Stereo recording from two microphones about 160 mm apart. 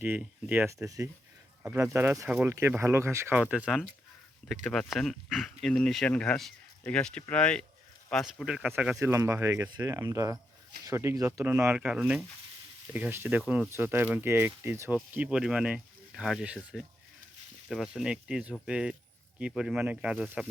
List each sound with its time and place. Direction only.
0.0 s speech: 10° right (ahead or behind)